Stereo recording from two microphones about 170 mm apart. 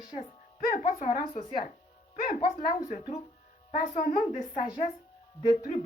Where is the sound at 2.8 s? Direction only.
40° left (ahead or behind).